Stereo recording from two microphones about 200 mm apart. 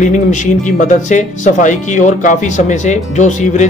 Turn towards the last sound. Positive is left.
turn(degrees=35)  # may be behind; listen again after turning